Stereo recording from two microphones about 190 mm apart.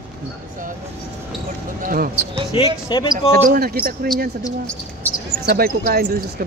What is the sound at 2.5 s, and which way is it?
Speech, 20° left (ahead or behind).